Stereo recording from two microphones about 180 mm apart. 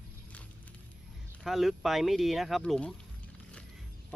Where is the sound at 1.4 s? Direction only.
Centre (ahead or behind).